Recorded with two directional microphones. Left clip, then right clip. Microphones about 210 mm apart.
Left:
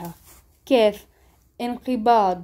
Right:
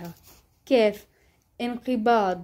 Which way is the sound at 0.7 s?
Centre (ahead or behind).